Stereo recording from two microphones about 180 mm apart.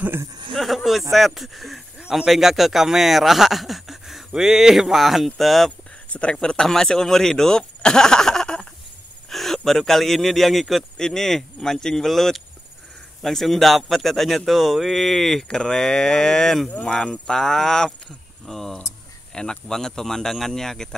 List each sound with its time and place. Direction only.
0.0 s speech: 10° right (ahead or behind)
0.5 s speech: centre (ahead or behind)